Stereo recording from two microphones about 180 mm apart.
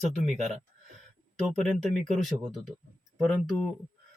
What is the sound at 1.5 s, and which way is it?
Speech, 40° right (ahead or behind).